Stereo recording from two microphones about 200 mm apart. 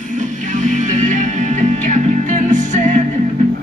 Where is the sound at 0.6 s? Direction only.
40° right (ahead or behind).